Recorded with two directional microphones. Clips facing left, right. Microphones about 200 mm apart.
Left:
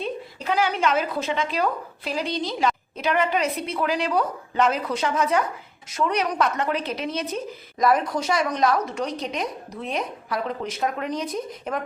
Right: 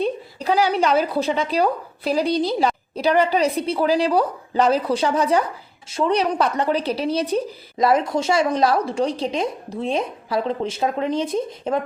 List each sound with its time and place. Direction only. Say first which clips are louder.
0.3 s a woman's voice: right 4 dB; 35° right (ahead or behind)